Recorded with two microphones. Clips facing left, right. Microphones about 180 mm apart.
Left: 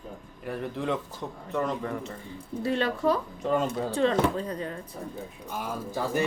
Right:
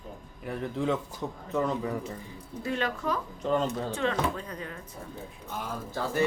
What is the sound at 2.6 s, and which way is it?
Speech, 30° left (ahead or behind).